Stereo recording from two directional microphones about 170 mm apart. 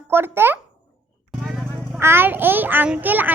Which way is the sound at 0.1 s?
15° right (ahead or behind).